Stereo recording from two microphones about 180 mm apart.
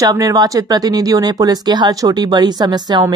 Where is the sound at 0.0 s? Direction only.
20° right (ahead or behind).